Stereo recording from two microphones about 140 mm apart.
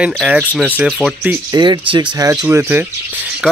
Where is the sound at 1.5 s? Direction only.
30° right (ahead or behind).